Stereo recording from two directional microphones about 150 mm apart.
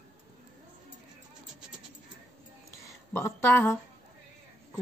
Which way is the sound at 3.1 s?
15° left (ahead or behind).